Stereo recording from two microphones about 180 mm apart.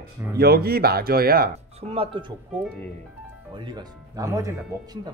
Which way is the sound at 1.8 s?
30° right (ahead or behind).